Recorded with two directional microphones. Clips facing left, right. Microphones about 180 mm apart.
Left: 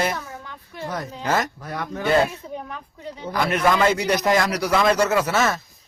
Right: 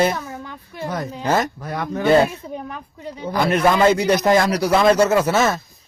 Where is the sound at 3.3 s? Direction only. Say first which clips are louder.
Right 3 dB; 30° right (ahead or behind).